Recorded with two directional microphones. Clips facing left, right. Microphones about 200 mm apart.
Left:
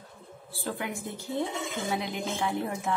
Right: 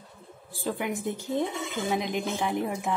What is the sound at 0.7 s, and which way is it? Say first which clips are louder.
Speech: right 5 dB; 15° right (ahead or behind).